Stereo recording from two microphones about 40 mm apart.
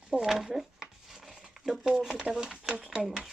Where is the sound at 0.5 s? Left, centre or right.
Centre.